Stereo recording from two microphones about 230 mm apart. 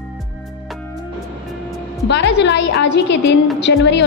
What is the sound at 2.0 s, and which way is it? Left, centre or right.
A woman's voice, left.